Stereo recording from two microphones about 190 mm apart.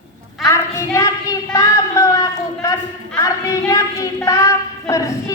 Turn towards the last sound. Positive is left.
turn(degrees=15)  # may be behind; listen again after turning